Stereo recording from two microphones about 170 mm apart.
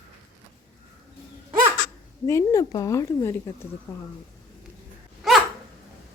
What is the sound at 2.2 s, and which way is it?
Speech, 20° left (ahead or behind).